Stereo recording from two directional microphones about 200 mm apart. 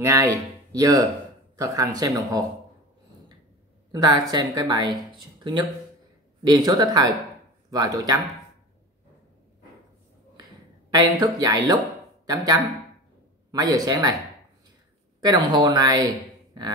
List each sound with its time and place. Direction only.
0.0 s speech: 15° right (ahead or behind)
3.9 s a woman's voice: 20° right (ahead or behind)
10.9 s a woman's voice: 20° right (ahead or behind)
15.1 s a woman's voice: 20° right (ahead or behind)